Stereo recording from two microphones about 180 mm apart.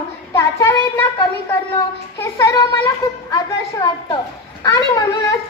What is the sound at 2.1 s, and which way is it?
A child's voice, 15° left (ahead or behind).